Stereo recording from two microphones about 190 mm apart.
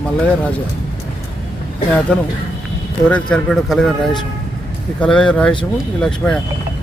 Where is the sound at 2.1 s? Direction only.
5° left (ahead or behind).